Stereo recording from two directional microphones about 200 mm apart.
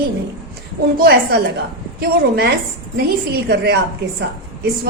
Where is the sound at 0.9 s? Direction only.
50° right (ahead or behind).